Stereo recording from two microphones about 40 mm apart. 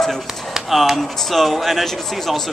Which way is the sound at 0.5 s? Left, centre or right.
Centre.